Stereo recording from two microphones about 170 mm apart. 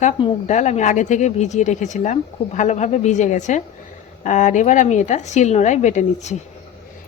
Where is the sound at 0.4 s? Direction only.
45° left (ahead or behind).